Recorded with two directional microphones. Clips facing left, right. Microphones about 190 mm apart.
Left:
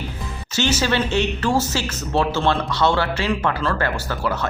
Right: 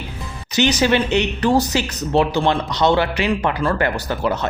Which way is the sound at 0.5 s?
15° right (ahead or behind).